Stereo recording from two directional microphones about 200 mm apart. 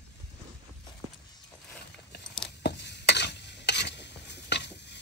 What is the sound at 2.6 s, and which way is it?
Stir, 55° left (ahead or behind).